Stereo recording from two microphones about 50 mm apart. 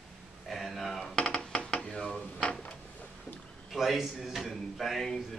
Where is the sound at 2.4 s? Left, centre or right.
Left.